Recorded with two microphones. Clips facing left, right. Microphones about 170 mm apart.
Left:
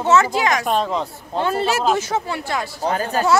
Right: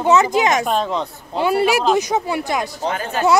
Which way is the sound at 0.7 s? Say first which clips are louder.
Even; centre (ahead or behind).